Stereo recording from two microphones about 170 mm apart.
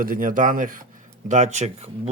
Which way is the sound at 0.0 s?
55° right (ahead or behind).